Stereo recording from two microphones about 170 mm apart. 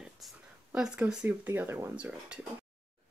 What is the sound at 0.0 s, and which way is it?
Speech, 5° right (ahead or behind).